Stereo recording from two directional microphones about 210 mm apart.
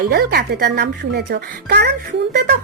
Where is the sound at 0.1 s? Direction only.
50° right (ahead or behind).